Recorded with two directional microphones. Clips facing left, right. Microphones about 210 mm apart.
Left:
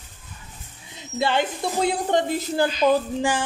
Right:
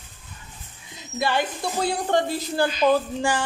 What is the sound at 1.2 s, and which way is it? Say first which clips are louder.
Speech: left 2 dB; 20° left (ahead or behind).